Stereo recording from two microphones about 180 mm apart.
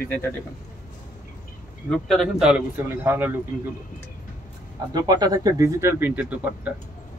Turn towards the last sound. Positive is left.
turn(degrees=-10)  # may be behind; listen again after turning